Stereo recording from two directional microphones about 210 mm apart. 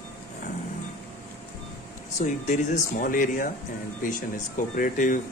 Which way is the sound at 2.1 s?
35° left (ahead or behind).